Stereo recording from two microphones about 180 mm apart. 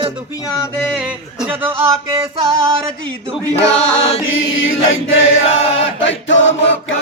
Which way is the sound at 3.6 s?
35° left (ahead or behind).